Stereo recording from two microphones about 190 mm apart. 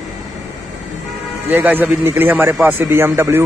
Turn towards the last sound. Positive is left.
turn(degrees=-15)  # may be behind; listen again after turning